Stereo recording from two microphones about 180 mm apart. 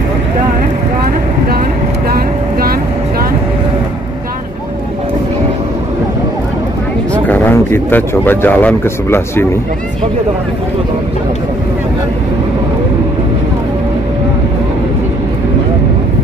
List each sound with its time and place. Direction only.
2.0 s vehicle: 55° right (ahead or behind)
7.2 s a man's voice: 10° left (ahead or behind)